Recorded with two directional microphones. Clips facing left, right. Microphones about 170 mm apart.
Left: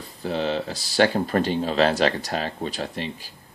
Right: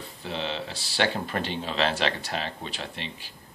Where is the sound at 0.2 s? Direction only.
40° left (ahead or behind).